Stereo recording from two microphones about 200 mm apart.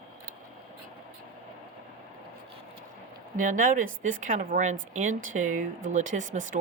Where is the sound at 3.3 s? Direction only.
40° right (ahead or behind).